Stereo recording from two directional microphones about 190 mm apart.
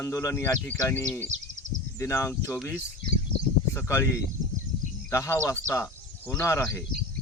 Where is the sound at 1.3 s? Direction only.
35° right (ahead or behind).